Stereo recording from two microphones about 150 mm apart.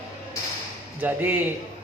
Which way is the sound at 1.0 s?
10° right (ahead or behind).